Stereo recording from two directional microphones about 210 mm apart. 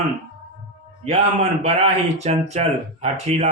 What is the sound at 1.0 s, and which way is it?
A man's voice, 30° right (ahead or behind).